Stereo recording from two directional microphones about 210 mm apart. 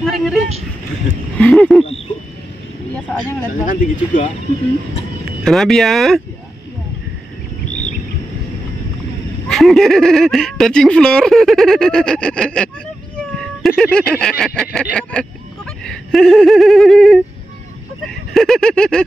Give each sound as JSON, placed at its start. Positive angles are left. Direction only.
{"t": 0.0, "sound": "speech", "side_deg": 0}
{"t": 1.4, "sound": "a sound", "side_deg": 0}
{"t": 3.6, "sound": "speech", "side_deg": 35}
{"t": 5.4, "sound": "speech", "side_deg": 0}
{"t": 9.5, "sound": "speech", "side_deg": 0}
{"t": 13.2, "sound": "a sound", "side_deg": 0}
{"t": 15.0, "sound": "speech", "side_deg": 5}
{"t": 15.8, "sound": "a sound", "side_deg": 0}
{"t": 18.0, "sound": "speech", "side_deg": 0}